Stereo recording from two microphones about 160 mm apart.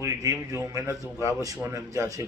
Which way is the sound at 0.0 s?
20° right (ahead or behind).